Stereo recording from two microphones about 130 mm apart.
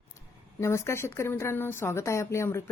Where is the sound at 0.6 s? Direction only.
20° left (ahead or behind).